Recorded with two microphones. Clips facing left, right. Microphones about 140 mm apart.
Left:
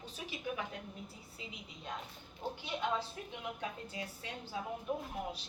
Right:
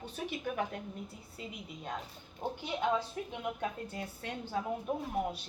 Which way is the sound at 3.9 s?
55° right (ahead or behind).